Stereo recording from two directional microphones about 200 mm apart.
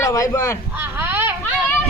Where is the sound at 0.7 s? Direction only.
10° right (ahead or behind).